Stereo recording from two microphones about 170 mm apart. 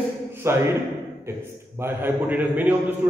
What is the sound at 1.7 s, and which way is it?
A man's voice, 15° right (ahead or behind).